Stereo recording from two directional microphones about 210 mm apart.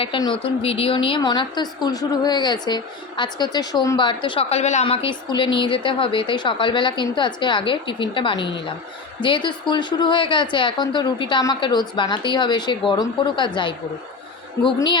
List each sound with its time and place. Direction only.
0.0 s a woman's voice: 25° left (ahead or behind)